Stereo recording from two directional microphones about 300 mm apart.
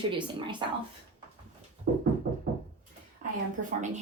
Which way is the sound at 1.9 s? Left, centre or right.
Right.